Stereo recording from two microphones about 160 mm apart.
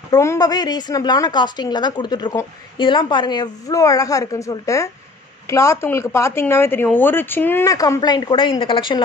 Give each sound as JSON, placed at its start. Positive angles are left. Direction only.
{"t": 0.1, "sound": "a woman's voice", "side_deg": 20}